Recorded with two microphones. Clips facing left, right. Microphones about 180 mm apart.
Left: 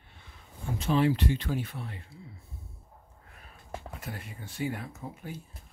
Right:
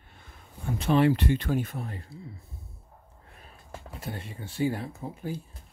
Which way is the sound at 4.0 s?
30° right (ahead or behind).